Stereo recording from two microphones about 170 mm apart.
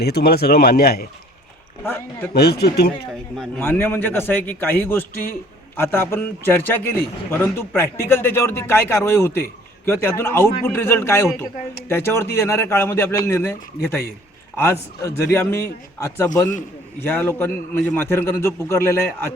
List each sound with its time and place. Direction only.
0.0 s speech: 70° left (ahead or behind)
1.8 s a man's voice: 10° left (ahead or behind)
2.3 s speech: 70° left (ahead or behind)
3.1 s speech: 5° left (ahead or behind)
3.6 s a man's voice: 15° left (ahead or behind)